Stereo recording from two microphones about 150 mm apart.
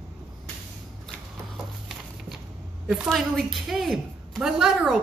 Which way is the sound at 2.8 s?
5° right (ahead or behind).